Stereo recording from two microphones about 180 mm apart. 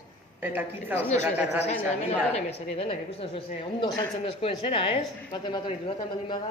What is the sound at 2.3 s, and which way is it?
A woman's voice, 35° left (ahead or behind).